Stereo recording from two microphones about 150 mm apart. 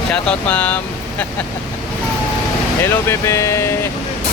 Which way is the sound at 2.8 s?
15° left (ahead or behind).